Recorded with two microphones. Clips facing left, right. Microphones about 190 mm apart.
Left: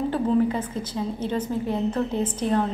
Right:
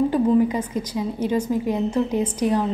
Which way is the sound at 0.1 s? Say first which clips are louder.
Right 4 dB; 15° right (ahead or behind).